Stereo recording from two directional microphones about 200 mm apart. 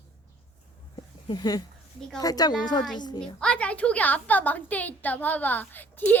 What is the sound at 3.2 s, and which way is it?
A woman's voice, 5° left (ahead or behind).